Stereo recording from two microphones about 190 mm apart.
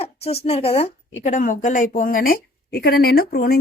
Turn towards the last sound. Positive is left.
turn(degrees=55)  # may be behind; listen again after turning